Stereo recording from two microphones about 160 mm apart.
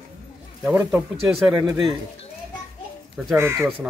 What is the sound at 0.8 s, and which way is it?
A man's voice, 10° right (ahead or behind).